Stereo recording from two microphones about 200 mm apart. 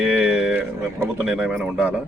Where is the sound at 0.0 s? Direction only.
5° right (ahead or behind).